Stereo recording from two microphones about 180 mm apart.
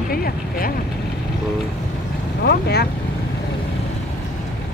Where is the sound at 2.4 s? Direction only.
65° left (ahead or behind).